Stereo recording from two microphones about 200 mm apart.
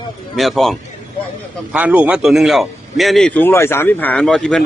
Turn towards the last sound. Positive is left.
turn(degrees=0)  # may be behind; listen again after turning